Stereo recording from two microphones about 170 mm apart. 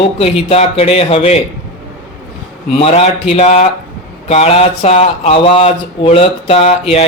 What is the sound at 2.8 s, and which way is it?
Speech, 40° left (ahead or behind).